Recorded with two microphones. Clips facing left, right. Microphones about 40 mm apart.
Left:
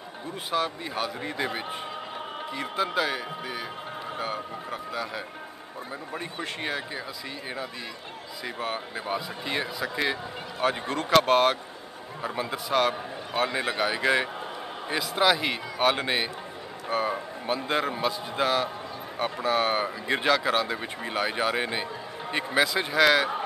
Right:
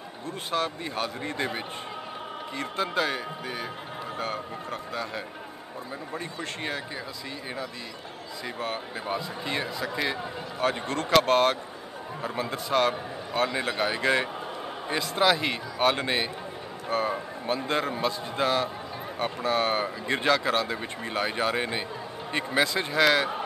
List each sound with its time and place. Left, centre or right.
0.5 s speech: centre
2.8 s speech: centre
4.2 s speech: centre
6.1 s speech: centre
8.5 s speech: centre
10.6 s speech: left; by 12.9 s centre
13.3 s speech: centre